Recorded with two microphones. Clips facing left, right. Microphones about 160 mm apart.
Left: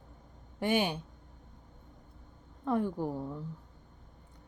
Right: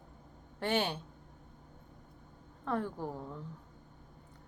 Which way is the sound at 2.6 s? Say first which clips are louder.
Left 5 dB; 15° left (ahead or behind).